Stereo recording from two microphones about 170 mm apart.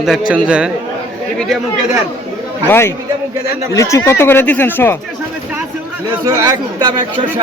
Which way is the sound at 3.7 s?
15° left (ahead or behind).